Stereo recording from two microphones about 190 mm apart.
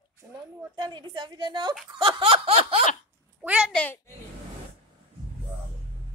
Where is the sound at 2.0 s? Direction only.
25° right (ahead or behind).